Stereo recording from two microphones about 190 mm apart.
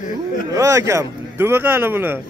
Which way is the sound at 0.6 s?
15° right (ahead or behind).